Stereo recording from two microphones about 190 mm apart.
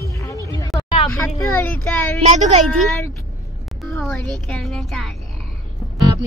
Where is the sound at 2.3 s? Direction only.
35° right (ahead or behind).